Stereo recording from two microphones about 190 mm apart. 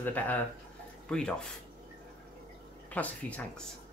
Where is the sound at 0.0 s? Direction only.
10° left (ahead or behind).